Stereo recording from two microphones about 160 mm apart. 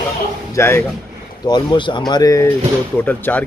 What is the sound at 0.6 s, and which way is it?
Speech, 15° left (ahead or behind).